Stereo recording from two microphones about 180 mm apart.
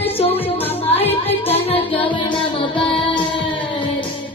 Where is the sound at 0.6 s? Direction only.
35° left (ahead or behind).